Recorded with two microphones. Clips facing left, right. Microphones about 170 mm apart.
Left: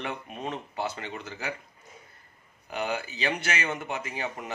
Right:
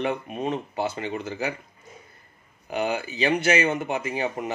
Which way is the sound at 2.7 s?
15° right (ahead or behind).